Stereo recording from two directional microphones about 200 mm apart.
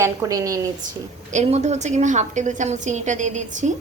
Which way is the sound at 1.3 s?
35° right (ahead or behind).